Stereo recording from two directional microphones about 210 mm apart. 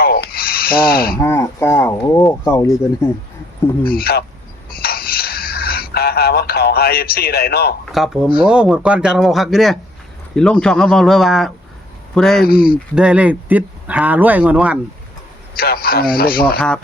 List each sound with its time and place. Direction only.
0.0 s rub: 45° left (ahead or behind)
1.2 s speech: 10° left (ahead or behind)
3.9 s a man's voice: 45° left (ahead or behind)
4.7 s a sound: 45° left (ahead or behind)
7.9 s speech: centre (ahead or behind)
12.5 s a man's voice: 45° left (ahead or behind)
13.0 s speech: 5° right (ahead or behind)
15.5 s a man's voice: 45° left (ahead or behind)
16.6 s speech: 5° left (ahead or behind)